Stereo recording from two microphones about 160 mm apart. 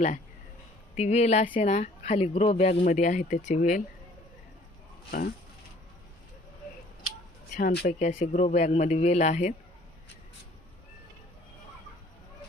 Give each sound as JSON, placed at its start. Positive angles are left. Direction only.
{"t": 0.9, "sound": "speech", "side_deg": 45}
{"t": 7.5, "sound": "speech", "side_deg": 75}
{"t": 7.9, "sound": "speech", "side_deg": 50}